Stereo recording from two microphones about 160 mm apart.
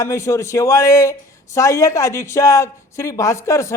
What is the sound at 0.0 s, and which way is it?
A man's voice, 20° left (ahead or behind).